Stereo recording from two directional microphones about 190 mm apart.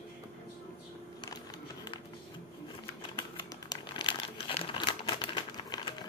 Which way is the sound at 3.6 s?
25° left (ahead or behind).